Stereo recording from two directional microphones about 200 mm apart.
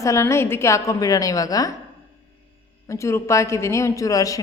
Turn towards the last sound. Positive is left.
turn(degrees=15)  # may be behind; listen again after turning